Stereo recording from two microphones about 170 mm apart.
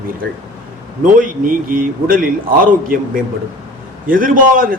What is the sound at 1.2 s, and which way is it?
A man's voice, 55° right (ahead or behind).